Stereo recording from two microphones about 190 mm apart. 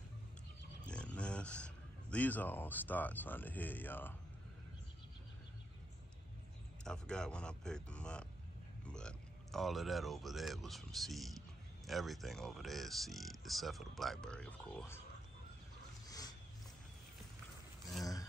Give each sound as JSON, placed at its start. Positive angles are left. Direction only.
{"t": 0.8, "sound": "a man's voice", "side_deg": 5}
{"t": 6.8, "sound": "speech", "side_deg": 5}
{"t": 16.1, "sound": "wild animals", "side_deg": 20}